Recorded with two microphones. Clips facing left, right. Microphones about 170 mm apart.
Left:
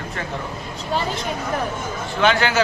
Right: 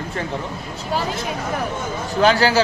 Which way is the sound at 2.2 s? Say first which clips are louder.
Right 3 dB; 35° right (ahead or behind).